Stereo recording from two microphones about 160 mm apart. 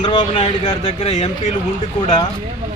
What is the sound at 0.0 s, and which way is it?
Speech, 30° left (ahead or behind).